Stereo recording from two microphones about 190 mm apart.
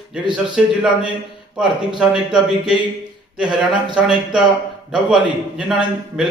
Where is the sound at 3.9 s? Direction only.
5° right (ahead or behind).